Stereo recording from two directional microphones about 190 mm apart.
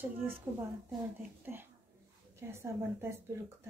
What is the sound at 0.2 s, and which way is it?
Speech, 10° right (ahead or behind).